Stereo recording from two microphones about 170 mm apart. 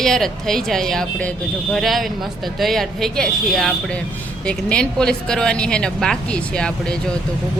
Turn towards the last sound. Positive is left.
turn(degrees=5)  # may be behind; listen again after turning